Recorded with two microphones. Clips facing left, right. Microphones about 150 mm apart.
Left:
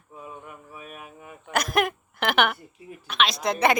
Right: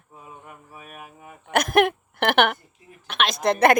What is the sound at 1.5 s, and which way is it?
A woman's voice, 60° right (ahead or behind).